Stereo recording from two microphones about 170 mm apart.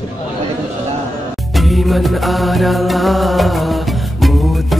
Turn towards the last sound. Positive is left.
turn(degrees=0)  # may be behind; listen again after turning